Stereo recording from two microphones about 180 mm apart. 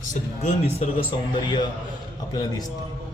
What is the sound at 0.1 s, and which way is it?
Speech, 40° left (ahead or behind).